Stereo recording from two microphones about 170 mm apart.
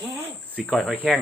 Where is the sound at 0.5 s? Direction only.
5° left (ahead or behind).